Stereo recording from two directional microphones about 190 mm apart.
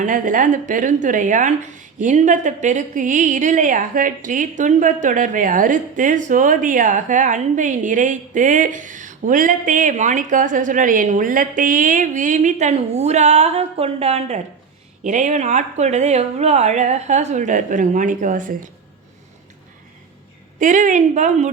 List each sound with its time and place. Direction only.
0.0 s speech: 45° right (ahead or behind)
20.6 s speech: 40° right (ahead or behind)